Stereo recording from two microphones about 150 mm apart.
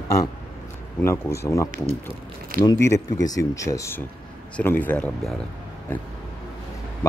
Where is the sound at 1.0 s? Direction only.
20° left (ahead or behind).